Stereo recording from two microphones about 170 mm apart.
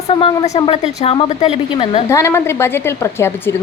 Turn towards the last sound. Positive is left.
turn(degrees=15)  # may be behind; listen again after turning